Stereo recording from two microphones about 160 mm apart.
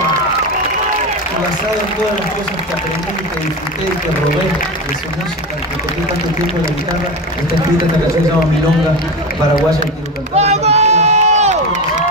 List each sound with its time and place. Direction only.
10.3 s run: 45° right (ahead or behind)